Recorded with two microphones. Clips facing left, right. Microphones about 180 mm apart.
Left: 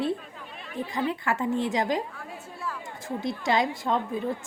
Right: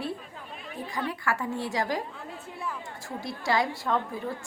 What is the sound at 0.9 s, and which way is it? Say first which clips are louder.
A woman's voice: left 2 dB; 25° left (ahead or behind).